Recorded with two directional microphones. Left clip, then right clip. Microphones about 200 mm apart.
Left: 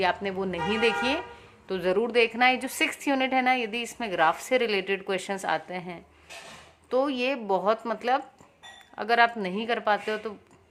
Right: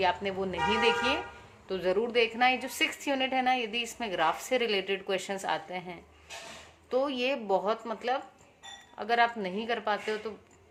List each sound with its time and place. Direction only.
0.0 s a woman's voice: 25° left (ahead or behind)